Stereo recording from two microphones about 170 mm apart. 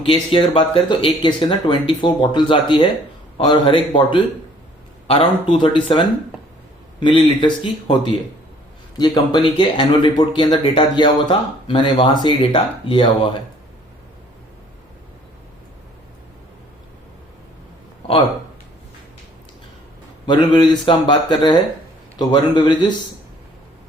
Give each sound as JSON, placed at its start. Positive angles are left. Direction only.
{"t": 0.0, "sound": "speech", "side_deg": 30}
{"t": 20.2, "sound": "speech", "side_deg": 25}